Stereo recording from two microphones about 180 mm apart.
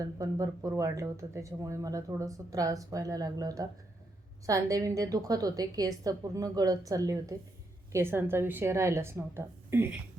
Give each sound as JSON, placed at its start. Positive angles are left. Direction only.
{"t": 0.0, "sound": "a woman's voice", "side_deg": -20}